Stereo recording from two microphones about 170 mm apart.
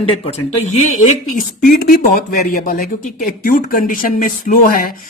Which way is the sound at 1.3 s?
55° left (ahead or behind).